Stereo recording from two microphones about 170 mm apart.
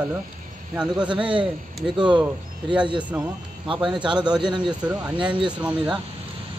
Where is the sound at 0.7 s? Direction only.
5° right (ahead or behind).